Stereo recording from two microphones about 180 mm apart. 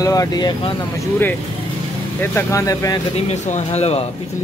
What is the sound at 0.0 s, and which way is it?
Speech, 20° left (ahead or behind).